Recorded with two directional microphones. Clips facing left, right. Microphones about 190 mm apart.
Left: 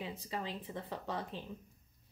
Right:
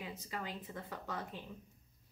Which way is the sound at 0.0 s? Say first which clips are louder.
Left 3 dB; 30° left (ahead or behind).